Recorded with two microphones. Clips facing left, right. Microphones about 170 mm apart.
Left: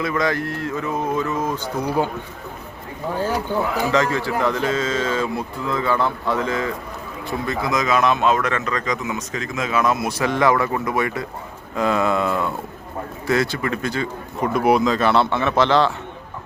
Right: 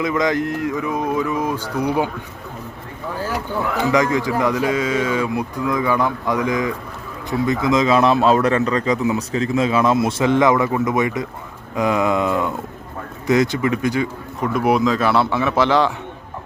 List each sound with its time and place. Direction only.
0.0 s a man's voice: 15° right (ahead or behind)
3.9 s a man's voice: 15° right (ahead or behind)
14.4 s speech: centre (ahead or behind)